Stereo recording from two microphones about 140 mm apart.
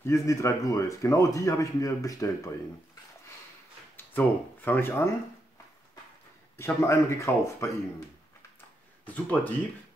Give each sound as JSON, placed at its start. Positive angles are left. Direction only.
{"t": 0.0, "sound": "speech", "side_deg": 20}
{"t": 3.9, "sound": "speech", "side_deg": 15}
{"t": 6.5, "sound": "speech", "side_deg": 20}
{"t": 9.0, "sound": "speech", "side_deg": 10}